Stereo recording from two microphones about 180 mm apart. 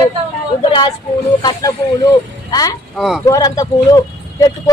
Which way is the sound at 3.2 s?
20° left (ahead or behind).